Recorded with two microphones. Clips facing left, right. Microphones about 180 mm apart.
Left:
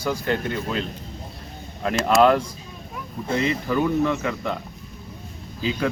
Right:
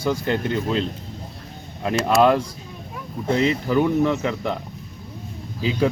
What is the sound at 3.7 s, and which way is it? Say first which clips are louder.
Speech: right 1 dB; 15° right (ahead or behind).